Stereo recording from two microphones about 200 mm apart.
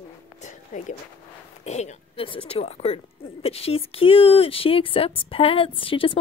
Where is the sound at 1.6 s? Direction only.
35° left (ahead or behind).